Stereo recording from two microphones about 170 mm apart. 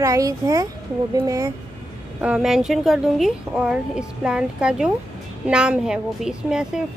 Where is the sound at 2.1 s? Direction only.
5° right (ahead or behind).